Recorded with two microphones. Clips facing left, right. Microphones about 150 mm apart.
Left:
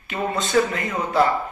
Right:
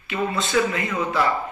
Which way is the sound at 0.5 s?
40° left (ahead or behind).